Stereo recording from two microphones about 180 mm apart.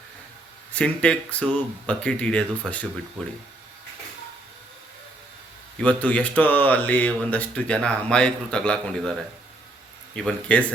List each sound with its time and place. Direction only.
0.7 s speech: 5° left (ahead or behind)
5.8 s speech: 10° left (ahead or behind)